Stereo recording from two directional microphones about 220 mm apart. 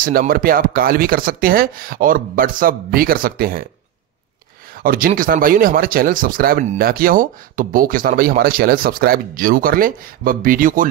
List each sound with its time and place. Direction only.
0.0 s speech: 40° right (ahead or behind)
4.8 s speech: 40° right (ahead or behind)